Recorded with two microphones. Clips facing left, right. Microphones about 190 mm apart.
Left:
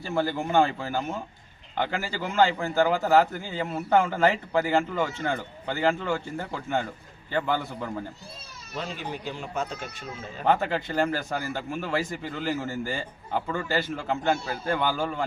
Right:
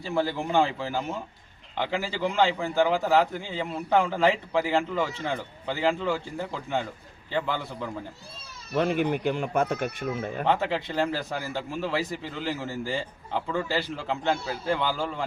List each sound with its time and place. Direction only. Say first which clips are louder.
0.0 s a man's voice: even; centre (ahead or behind)
8.7 s speech: right 10 dB; 55° right (ahead or behind)
10.4 s a man's voice: left 2 dB; centre (ahead or behind)